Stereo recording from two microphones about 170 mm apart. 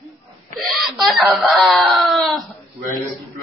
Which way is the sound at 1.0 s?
Centre (ahead or behind).